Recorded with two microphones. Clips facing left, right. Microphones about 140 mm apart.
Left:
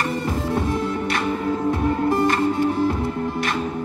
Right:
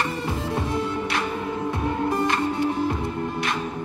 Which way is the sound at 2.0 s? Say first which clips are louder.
Left 4 dB; 40° left (ahead or behind).